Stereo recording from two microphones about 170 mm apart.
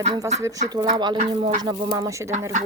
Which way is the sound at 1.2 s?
35° right (ahead or behind).